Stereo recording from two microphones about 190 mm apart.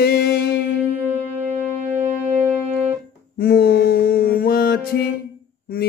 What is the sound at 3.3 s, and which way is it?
Mantra, 50° left (ahead or behind).